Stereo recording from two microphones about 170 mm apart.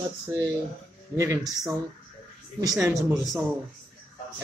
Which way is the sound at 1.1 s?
20° right (ahead or behind).